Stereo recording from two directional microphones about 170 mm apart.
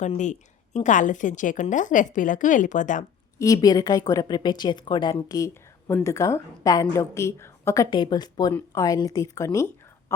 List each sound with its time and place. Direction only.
0.0 s a woman's voice: 45° left (ahead or behind)
3.3 s a woman's voice: 20° left (ahead or behind)